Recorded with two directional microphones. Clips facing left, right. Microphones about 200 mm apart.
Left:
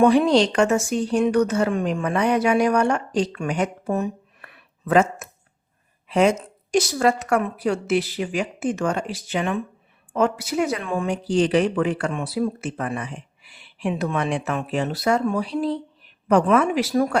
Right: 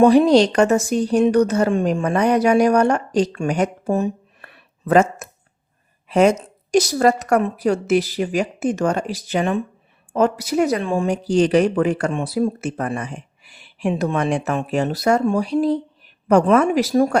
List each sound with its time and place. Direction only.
0.1 s speech: 40° right (ahead or behind)
3.8 s a sound: 30° right (ahead or behind)
6.1 s speech: 45° right (ahead or behind)